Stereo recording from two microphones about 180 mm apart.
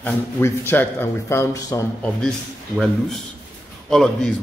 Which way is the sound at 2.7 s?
Centre (ahead or behind).